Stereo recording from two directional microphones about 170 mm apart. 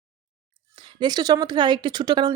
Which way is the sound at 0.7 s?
25° right (ahead or behind).